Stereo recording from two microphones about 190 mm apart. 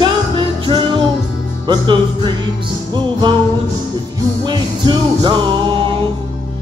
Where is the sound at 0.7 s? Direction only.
20° right (ahead or behind).